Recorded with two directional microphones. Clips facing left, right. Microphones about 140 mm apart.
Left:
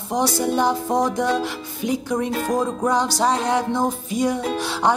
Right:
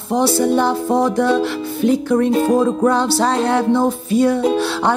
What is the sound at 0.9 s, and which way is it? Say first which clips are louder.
Music: right 5 dB; 15° left (ahead or behind).